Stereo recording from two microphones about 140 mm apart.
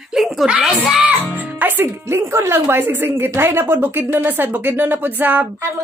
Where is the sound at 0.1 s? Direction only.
Centre (ahead or behind).